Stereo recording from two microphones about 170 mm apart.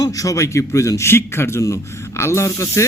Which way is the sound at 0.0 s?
20° left (ahead or behind).